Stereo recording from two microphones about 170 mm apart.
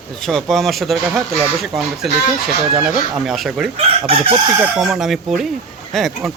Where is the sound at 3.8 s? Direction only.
35° right (ahead or behind).